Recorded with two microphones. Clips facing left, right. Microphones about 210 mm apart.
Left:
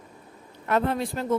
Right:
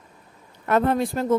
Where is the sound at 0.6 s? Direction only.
50° right (ahead or behind).